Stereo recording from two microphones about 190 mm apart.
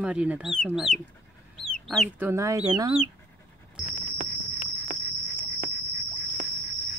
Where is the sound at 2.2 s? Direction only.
15° right (ahead or behind).